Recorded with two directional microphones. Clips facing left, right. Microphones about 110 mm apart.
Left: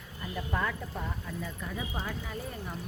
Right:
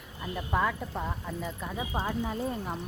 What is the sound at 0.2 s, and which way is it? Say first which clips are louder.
Speech: right 4 dB; 10° right (ahead or behind).